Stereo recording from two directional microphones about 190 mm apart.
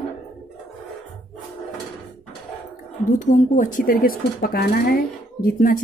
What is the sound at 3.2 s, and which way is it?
Speech, 40° left (ahead or behind).